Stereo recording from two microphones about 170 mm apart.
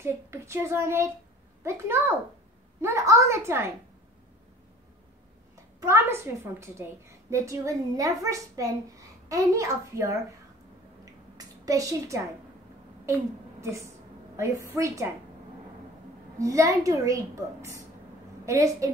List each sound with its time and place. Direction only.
0.0 s a woman's voice: 15° right (ahead or behind)
5.8 s a woman's voice: 15° right (ahead or behind)
11.3 s a woman's voice: 20° right (ahead or behind)
16.3 s a woman's voice: 20° right (ahead or behind)